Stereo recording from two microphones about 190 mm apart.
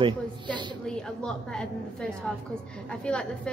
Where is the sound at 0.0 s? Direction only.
25° right (ahead or behind).